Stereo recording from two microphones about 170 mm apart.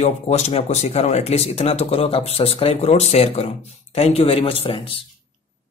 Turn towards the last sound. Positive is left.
turn(degrees=35)  # may be behind; listen again after turning